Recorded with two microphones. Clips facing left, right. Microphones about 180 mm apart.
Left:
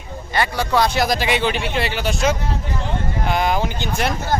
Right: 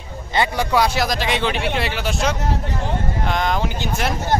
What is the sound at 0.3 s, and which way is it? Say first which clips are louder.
Speech: right 1 dB; 20° right (ahead or behind).